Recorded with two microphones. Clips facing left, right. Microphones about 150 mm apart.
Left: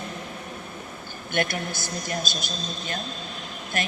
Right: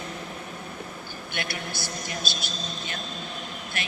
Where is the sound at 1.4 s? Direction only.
50° left (ahead or behind).